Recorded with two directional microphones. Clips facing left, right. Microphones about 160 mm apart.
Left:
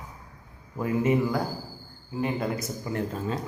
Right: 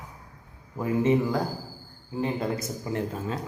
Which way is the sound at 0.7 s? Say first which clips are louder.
Right 1 dB; 25° right (ahead or behind).